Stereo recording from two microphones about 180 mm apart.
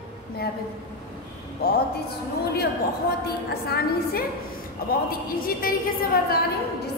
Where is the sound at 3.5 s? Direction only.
60° left (ahead or behind).